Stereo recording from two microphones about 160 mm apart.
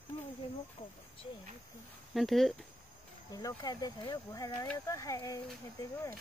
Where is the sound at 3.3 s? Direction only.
25° left (ahead or behind).